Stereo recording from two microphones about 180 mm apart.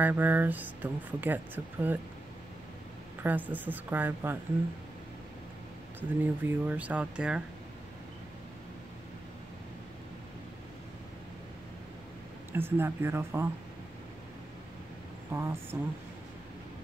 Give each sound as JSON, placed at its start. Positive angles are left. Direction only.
{"t": 0.0, "sound": "speech", "side_deg": -10}
{"t": 3.2, "sound": "speech", "side_deg": -10}
{"t": 5.9, "sound": "speech", "side_deg": -10}
{"t": 12.5, "sound": "speech", "side_deg": -10}
{"t": 15.3, "sound": "speech", "side_deg": -15}